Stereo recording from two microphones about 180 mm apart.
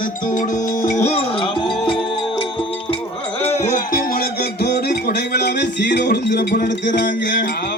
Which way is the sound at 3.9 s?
60° left (ahead or behind).